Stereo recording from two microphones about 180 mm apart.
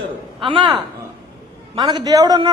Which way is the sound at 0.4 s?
25° right (ahead or behind).